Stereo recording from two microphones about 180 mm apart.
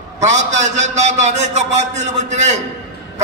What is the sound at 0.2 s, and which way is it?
A man's voice, 40° right (ahead or behind).